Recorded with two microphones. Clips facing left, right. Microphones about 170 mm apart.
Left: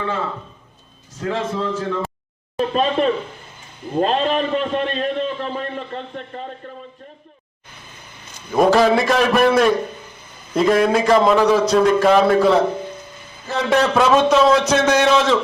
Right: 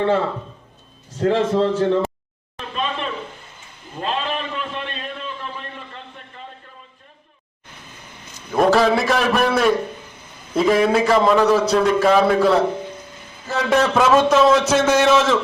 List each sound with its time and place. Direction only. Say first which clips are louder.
1.2 s a man's voice: right 6 dB; 30° right (ahead or behind)
2.6 s a man's voice: left 8 dB; 40° left (ahead or behind)
8.5 s a man's voice: left 2 dB; centre (ahead or behind)
10.5 s a man's voice: left 1 dB; 5° right (ahead or behind)
11.6 s a man's voice: left 2 dB; 5° right (ahead or behind)